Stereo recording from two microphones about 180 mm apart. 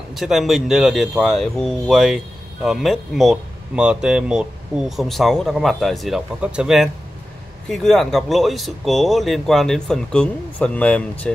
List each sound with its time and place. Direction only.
0.1 s speech: centre (ahead or behind)